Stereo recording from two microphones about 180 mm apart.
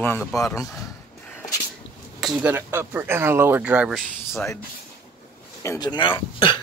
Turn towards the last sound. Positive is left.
turn(degrees=25)  # may be behind; listen again after turning